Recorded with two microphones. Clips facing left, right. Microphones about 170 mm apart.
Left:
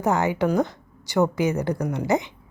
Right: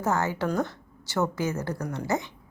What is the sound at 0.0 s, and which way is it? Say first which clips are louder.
A woman's voice: left 5 dB; 15° left (ahead or behind).